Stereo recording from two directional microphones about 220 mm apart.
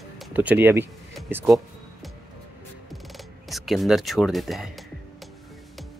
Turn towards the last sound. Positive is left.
turn(degrees=0)  # may be behind; listen again after turning